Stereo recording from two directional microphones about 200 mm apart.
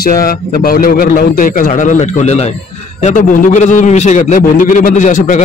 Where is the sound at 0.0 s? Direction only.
50° left (ahead or behind).